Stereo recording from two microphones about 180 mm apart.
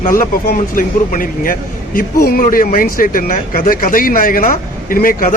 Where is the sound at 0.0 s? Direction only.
50° left (ahead or behind).